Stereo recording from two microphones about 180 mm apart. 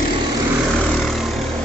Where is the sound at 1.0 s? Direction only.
Centre (ahead or behind).